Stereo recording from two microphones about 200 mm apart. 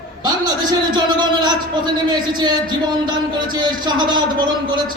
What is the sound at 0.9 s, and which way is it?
Speech, 20° right (ahead or behind).